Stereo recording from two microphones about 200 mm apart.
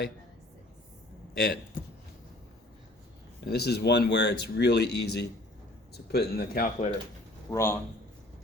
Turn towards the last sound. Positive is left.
turn(degrees=15)  # may be behind; listen again after turning